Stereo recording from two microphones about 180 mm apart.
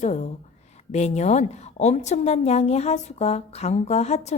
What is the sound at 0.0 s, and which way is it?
A woman's voice, 40° left (ahead or behind).